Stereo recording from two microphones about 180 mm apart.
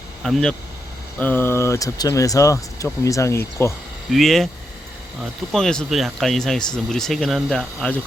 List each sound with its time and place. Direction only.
0.2 s speech: centre (ahead or behind)
1.2 s speech: 10° left (ahead or behind)
4.1 s speech: centre (ahead or behind)
5.5 s speech: 5° left (ahead or behind)